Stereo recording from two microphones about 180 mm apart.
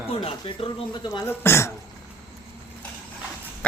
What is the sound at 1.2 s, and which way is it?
Speech, 15° left (ahead or behind).